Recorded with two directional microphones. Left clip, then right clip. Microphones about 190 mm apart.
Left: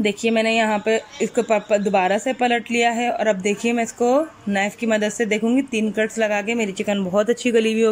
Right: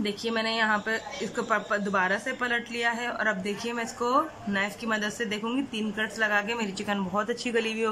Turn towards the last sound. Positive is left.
turn(degrees=20)  # may be behind; listen again after turning